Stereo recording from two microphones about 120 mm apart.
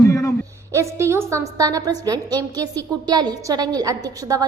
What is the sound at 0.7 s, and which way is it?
A woman's voice, 25° right (ahead or behind).